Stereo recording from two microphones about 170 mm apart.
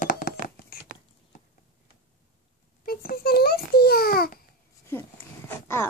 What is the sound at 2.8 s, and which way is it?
Babbling, 60° left (ahead or behind).